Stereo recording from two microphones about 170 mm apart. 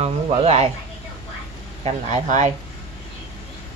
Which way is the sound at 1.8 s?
45° right (ahead or behind).